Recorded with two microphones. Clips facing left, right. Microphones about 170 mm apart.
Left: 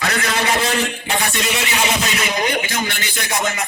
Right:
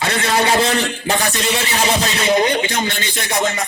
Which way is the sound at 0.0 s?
30° right (ahead or behind).